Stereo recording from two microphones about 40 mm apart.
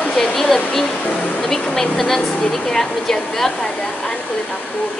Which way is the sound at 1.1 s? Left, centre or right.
Left.